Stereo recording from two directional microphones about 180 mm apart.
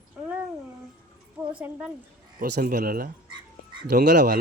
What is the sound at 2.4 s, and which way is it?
Speech, 55° right (ahead or behind).